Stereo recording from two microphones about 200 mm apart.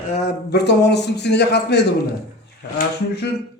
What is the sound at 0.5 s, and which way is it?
A man's voice, 55° left (ahead or behind).